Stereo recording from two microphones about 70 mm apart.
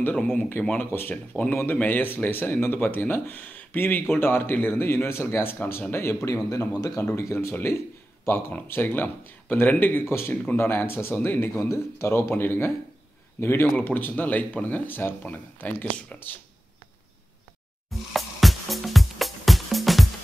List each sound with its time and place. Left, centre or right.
0.4 s speech: left
1.1 s speech: centre; by 6.3 s left
6.3 s a man's voice: left
7.0 s speech: left
10.0 s speech: left
10.3 s speech: left
17.8 s music: centre